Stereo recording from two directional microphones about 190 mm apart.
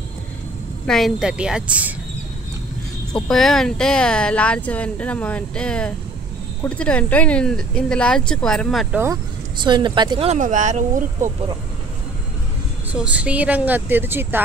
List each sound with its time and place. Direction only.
0.8 s speech: centre (ahead or behind)
3.1 s speech: 5° left (ahead or behind)
8.9 s speech: 15° right (ahead or behind)
9.6 s speech: 25° right (ahead or behind)
10.3 s speech: 40° right (ahead or behind)
12.9 s speech: 5° right (ahead or behind)